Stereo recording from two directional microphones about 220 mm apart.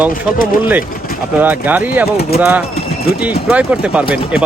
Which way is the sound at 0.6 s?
10° right (ahead or behind).